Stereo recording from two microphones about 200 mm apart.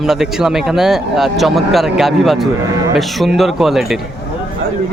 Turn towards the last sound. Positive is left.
turn(degrees=0)  # may be behind; listen again after turning